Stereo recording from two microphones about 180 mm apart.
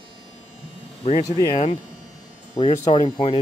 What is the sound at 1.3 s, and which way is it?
Speech, 25° left (ahead or behind).